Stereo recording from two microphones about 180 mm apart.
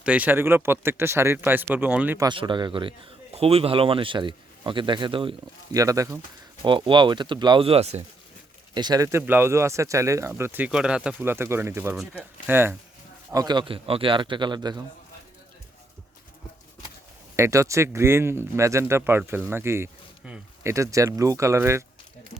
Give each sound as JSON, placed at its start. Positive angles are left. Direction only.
{"t": 0.0, "sound": "speech", "side_deg": -10}
{"t": 2.2, "sound": "a man's voice", "side_deg": -25}
{"t": 8.7, "sound": "speech", "side_deg": -20}
{"t": 13.3, "sound": "a man's voice", "side_deg": -25}
{"t": 17.3, "sound": "speech", "side_deg": -15}